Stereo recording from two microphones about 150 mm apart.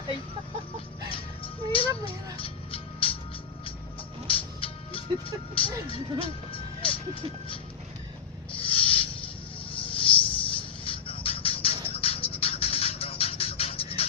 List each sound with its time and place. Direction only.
1.1 s music: 35° left (ahead or behind)
4.3 s music: 35° left (ahead or behind)
5.5 s speech: 40° left (ahead or behind)
8.5 s a sound: 35° left (ahead or behind)
9.6 s music: 35° left (ahead or behind)